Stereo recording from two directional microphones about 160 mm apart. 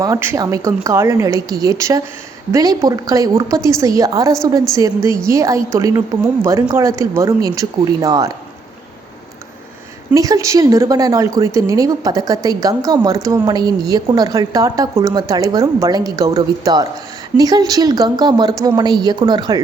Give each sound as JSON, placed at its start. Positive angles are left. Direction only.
{"t": 0.0, "sound": "a woman's voice", "side_deg": -20}
{"t": 10.2, "sound": "a woman's voice", "side_deg": -20}